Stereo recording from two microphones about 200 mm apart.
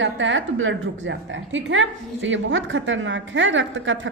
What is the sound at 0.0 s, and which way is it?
A woman's voice, 70° right (ahead or behind).